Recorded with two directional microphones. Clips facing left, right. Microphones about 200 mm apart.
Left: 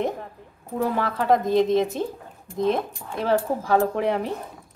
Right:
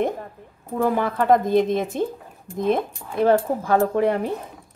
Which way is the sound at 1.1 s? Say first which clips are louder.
Right 1 dB; 55° right (ahead or behind).